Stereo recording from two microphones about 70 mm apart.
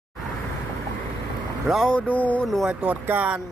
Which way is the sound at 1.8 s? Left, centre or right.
Centre.